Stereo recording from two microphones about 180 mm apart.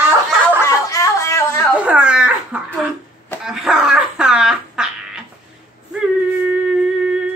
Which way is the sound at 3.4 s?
Centre (ahead or behind).